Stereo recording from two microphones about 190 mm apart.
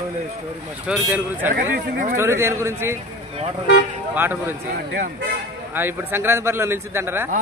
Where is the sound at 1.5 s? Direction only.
45° right (ahead or behind).